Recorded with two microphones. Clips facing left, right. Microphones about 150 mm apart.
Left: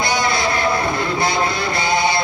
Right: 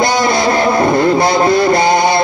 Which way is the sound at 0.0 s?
45° right (ahead or behind).